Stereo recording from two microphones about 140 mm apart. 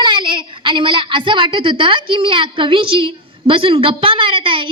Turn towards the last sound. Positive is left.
turn(degrees=-40)  # may be behind; listen again after turning